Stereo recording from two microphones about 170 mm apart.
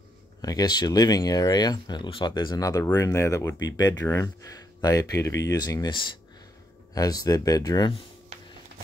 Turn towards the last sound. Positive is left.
turn(degrees=25)  # may be behind; listen again after turning